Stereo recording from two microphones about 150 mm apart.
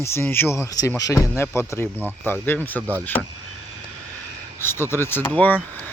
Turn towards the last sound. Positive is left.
turn(degrees=10)  # may be behind; listen again after turning